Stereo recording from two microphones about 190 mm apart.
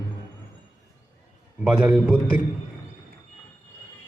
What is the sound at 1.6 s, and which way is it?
Speech, 5° right (ahead or behind).